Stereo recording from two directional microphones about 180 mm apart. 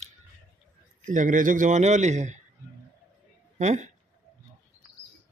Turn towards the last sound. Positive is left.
turn(degrees=-40)  # may be behind; listen again after turning